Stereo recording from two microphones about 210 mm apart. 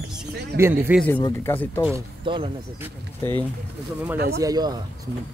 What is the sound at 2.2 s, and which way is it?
Speech, 25° right (ahead or behind).